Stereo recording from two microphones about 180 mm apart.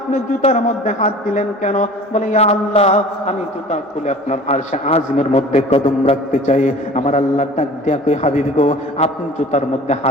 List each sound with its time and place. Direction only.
0.1 s a man's voice: 40° left (ahead or behind)